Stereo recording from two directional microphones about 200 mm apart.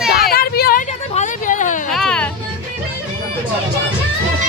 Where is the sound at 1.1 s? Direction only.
40° left (ahead or behind).